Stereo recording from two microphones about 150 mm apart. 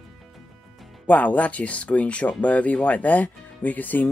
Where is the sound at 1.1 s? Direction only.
10° left (ahead or behind).